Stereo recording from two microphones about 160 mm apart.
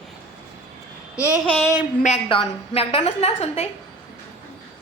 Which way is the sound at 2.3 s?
35° left (ahead or behind).